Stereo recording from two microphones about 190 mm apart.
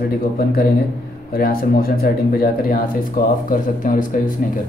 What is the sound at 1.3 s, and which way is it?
Speech, 50° left (ahead or behind).